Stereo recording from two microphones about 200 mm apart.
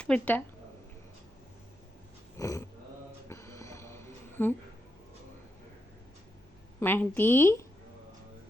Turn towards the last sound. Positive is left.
turn(degrees=10)  # may be behind; listen again after turning